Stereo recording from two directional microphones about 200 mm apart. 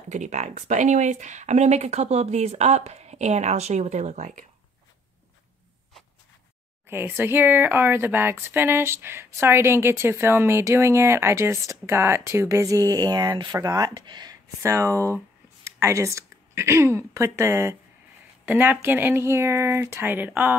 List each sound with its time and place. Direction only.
0.1 s speech: 35° right (ahead or behind)
6.9 s speech: 10° right (ahead or behind)